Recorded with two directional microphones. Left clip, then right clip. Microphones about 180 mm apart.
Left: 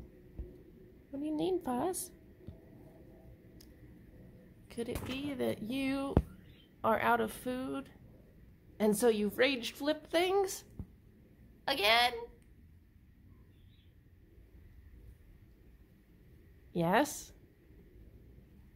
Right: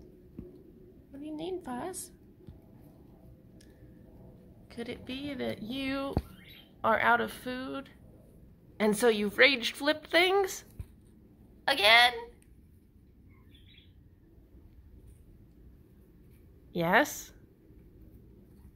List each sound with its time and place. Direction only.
1.2 s a woman's voice: 40° left (ahead or behind)
4.6 s a sound: 35° left (ahead or behind)
5.0 s speech: 25° left (ahead or behind)
8.7 s a woman's voice: 10° left (ahead or behind)
11.6 s a woman's voice: 10° left (ahead or behind)
16.7 s a woman's voice: 10° left (ahead or behind)